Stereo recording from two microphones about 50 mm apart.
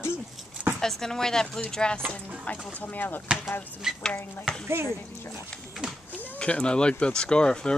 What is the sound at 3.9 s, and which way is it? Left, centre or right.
Speech, centre.